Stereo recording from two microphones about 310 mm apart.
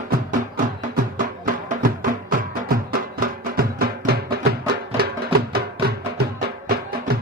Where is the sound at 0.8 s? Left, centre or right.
Right.